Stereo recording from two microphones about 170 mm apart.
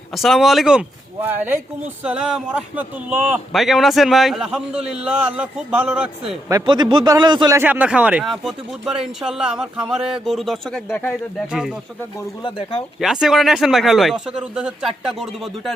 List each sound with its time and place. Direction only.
0.1 s speech: centre (ahead or behind)
6.5 s a man's voice: 25° right (ahead or behind)
7.6 s speech: 10° right (ahead or behind)
12.4 s speech: 30° left (ahead or behind)
13.0 s speech: centre (ahead or behind)